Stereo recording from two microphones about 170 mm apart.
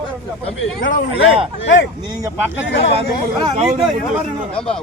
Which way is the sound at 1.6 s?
90° left.